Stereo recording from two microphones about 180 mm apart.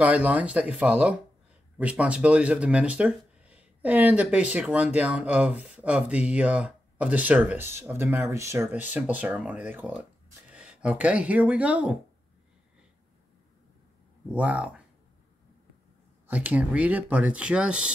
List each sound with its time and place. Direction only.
0.0 s speech: 10° right (ahead or behind)
14.3 s speech: 5° right (ahead or behind)
16.3 s speech: 10° right (ahead or behind)